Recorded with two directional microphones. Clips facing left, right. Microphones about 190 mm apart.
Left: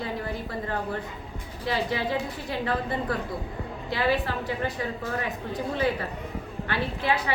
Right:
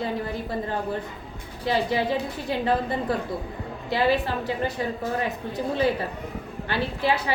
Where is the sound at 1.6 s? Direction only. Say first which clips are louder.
Right 4 dB; 30° right (ahead or behind).